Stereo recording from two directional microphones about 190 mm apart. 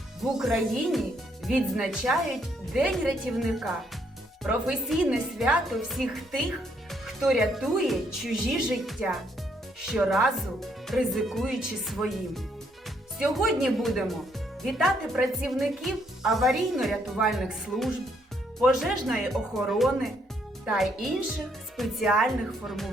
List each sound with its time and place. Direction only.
0.2 s speech: centre (ahead or behind)
13.1 s speech: 5° right (ahead or behind)